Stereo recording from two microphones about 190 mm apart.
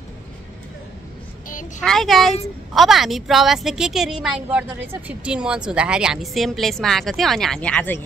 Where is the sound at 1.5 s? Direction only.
45° left (ahead or behind).